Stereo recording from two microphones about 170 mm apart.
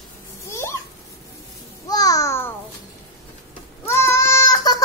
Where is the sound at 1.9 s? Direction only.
20° left (ahead or behind).